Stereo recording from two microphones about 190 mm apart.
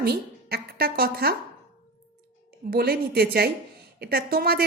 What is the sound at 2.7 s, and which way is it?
A woman's voice, 55° right (ahead or behind).